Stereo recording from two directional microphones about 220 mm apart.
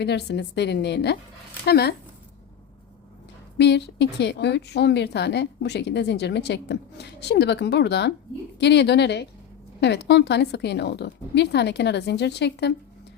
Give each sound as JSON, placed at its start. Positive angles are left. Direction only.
{"t": 0.0, "sound": "a woman's voice", "side_deg": 50}
{"t": 3.6, "sound": "a woman's voice", "side_deg": 50}